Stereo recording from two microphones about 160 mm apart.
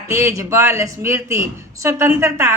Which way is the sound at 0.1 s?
15° right (ahead or behind).